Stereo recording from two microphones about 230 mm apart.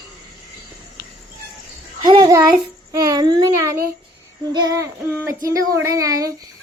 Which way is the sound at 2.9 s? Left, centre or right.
Centre.